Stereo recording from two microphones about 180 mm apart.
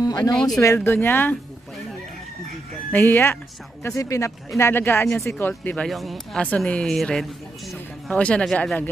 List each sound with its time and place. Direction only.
0.0 s a sound: 20° left (ahead or behind)
0.3 s speech: centre (ahead or behind)
0.6 s speech: 15° left (ahead or behind)
2.9 s speech: 10° left (ahead or behind)